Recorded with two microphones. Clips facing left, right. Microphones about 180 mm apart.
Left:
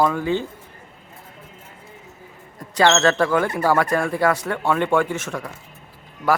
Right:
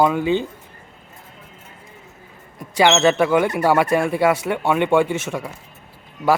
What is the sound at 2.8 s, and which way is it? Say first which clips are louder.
Speech: right 2 dB; 10° right (ahead or behind).